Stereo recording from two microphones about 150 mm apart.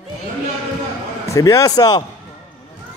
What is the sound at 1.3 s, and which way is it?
Speech, 20° left (ahead or behind).